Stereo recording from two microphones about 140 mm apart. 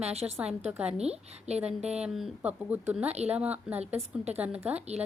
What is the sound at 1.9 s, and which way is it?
A woman's voice, 5° right (ahead or behind).